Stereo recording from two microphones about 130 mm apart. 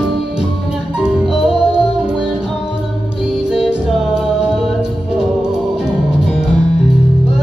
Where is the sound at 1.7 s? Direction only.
35° right (ahead or behind).